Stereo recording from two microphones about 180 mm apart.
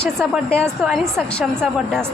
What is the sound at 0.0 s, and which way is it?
A woman's voice, 5° left (ahead or behind).